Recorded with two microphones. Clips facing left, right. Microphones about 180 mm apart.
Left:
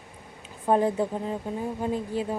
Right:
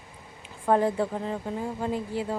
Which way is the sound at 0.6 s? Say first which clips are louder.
Even; 20° left (ahead or behind).